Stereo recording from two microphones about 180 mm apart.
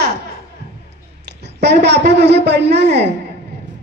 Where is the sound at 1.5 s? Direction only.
70° right (ahead or behind).